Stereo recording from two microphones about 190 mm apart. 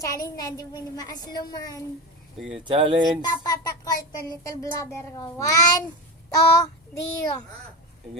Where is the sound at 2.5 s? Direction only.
25° right (ahead or behind).